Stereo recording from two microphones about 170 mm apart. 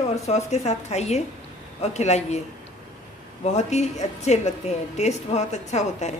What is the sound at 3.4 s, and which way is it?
A woman's voice, 40° left (ahead or behind).